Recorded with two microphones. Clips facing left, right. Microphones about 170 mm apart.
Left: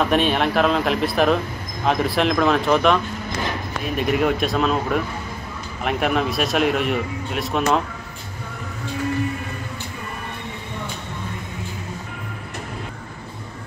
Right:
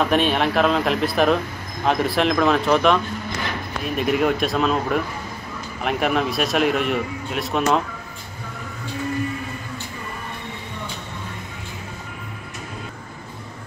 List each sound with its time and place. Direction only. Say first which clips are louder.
0.0 s speech: even; centre (ahead or behind)